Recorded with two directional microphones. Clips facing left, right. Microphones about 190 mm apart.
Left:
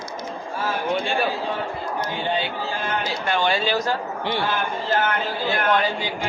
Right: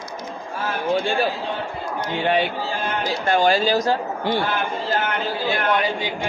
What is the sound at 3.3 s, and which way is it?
Speech, 40° right (ahead or behind).